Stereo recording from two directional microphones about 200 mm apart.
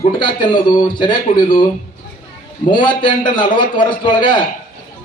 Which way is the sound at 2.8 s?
25° left (ahead or behind).